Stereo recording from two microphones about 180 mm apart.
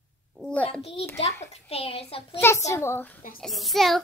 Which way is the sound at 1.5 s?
30° left (ahead or behind).